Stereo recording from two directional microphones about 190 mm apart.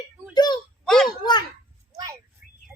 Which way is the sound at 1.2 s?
20° left (ahead or behind).